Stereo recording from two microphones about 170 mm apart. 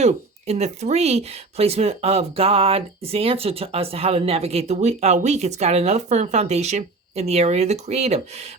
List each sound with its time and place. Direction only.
0.0 s speech: 40° right (ahead or behind)